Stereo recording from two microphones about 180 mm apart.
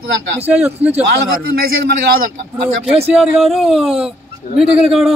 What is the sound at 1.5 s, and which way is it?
Speech, 60° right (ahead or behind).